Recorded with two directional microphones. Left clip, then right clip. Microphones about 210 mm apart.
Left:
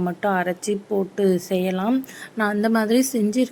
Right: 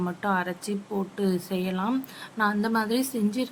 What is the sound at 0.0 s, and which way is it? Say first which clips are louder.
Speech: left 5 dB; 10° left (ahead or behind).